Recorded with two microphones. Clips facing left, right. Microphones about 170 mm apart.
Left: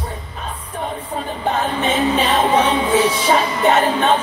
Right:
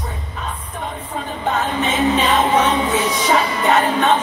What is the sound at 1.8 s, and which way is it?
Music, 30° left (ahead or behind).